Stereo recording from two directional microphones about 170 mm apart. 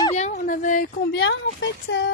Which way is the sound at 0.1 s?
40° left (ahead or behind).